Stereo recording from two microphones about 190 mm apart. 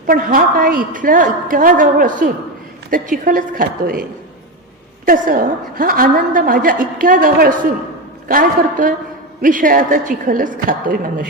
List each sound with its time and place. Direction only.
0.1 s a woman's voice: 45° right (ahead or behind)
5.0 s a woman's voice: 50° right (ahead or behind)